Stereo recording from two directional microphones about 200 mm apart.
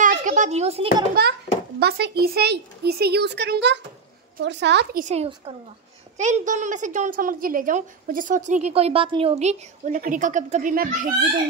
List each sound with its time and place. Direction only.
0.0 s a child's voice: 40° right (ahead or behind)
1.2 s a child's voice: 50° right (ahead or behind)
5.0 s a woman's voice: 35° right (ahead or behind)